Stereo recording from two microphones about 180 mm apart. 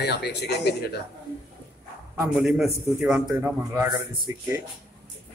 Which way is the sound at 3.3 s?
15° right (ahead or behind).